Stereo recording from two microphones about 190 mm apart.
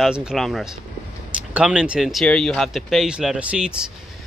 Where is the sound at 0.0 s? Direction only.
5° right (ahead or behind).